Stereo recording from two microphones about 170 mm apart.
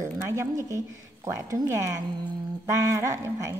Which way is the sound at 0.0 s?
20° right (ahead or behind).